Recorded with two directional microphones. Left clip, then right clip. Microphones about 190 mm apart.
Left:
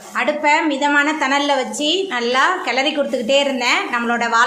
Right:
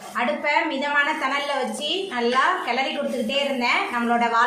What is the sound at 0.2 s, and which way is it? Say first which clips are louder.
A woman's voice: left 6 dB; 50° left (ahead or behind).